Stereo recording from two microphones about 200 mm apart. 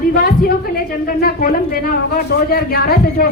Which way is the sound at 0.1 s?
50° left (ahead or behind).